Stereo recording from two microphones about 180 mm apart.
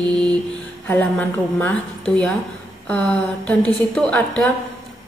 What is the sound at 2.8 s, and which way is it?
A woman's voice, 5° left (ahead or behind).